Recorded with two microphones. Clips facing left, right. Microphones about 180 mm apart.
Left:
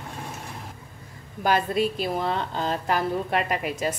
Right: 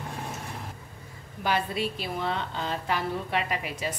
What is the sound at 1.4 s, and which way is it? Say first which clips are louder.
A woman's voice: left 5 dB; 45° left (ahead or behind).